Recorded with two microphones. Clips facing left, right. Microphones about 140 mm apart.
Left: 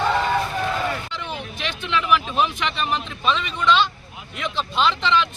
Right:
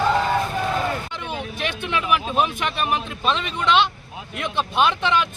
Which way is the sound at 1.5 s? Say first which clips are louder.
Left 1 dB; 50° right (ahead or behind).